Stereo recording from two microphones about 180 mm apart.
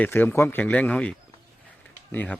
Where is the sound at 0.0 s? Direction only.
10° left (ahead or behind).